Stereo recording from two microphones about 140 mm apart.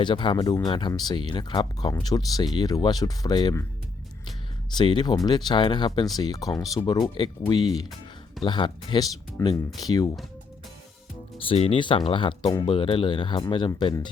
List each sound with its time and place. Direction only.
0.0 s speech: 35° left (ahead or behind)
4.8 s speech: 30° left (ahead or behind)
11.4 s speech: 45° left (ahead or behind)